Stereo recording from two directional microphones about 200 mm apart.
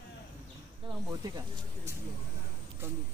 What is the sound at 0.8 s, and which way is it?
Speech, 20° right (ahead or behind).